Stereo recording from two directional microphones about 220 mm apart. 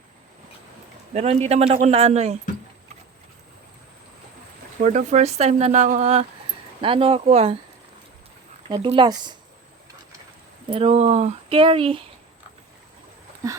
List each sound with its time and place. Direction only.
1.1 s speech: 30° right (ahead or behind)
4.8 s speech: 30° right (ahead or behind)
8.7 s speech: 20° right (ahead or behind)
10.7 s speech: 25° right (ahead or behind)